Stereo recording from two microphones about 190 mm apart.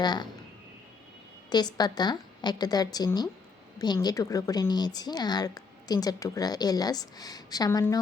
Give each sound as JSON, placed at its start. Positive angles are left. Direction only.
{"t": 0.0, "sound": "speech", "side_deg": 25}
{"t": 1.5, "sound": "speech", "side_deg": 20}